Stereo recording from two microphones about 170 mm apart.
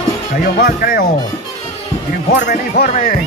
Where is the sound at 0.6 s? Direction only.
60° left (ahead or behind).